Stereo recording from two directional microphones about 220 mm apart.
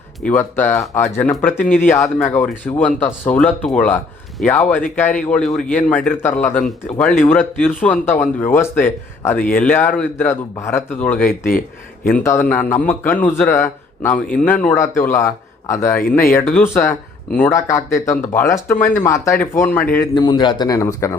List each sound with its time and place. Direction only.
0.2 s a man's voice: 5° left (ahead or behind)
11.2 s speech: 40° left (ahead or behind)
12.0 s a man's voice: 10° left (ahead or behind)